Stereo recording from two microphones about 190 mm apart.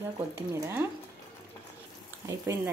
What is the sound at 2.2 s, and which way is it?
Speech, 15° right (ahead or behind).